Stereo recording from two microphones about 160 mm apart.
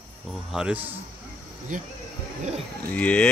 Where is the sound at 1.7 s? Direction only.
55° right (ahead or behind).